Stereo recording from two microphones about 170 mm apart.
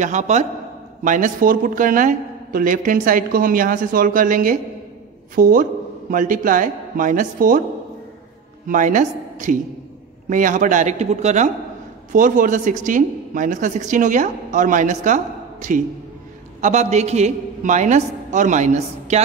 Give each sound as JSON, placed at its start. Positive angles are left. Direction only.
{"t": 0.0, "sound": "a woman's voice", "side_deg": -45}
{"t": 8.6, "sound": "a woman's voice", "side_deg": -50}